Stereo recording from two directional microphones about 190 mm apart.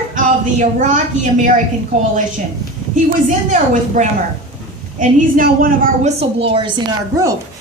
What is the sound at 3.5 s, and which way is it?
A woman's voice, 40° right (ahead or behind).